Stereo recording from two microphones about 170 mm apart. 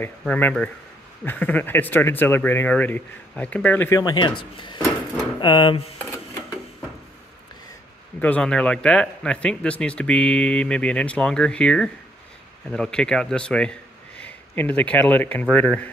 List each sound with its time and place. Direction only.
0.0 s speech: 10° left (ahead or behind)
4.0 s speech: 25° left (ahead or behind)
8.2 s a man's voice: 5° left (ahead or behind)